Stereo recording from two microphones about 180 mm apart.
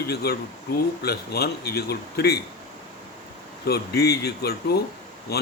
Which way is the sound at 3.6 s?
60° left (ahead or behind).